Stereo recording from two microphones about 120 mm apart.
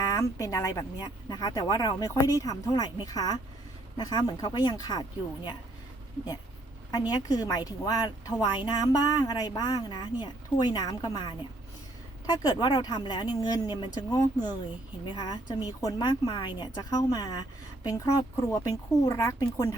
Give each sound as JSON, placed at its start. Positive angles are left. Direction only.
{"t": 0.0, "sound": "a woman's voice", "side_deg": 30}
{"t": 7.1, "sound": "a woman's voice", "side_deg": 35}